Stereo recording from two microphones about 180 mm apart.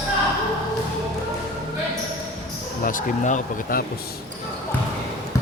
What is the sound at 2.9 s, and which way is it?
Speech, 45° left (ahead or behind).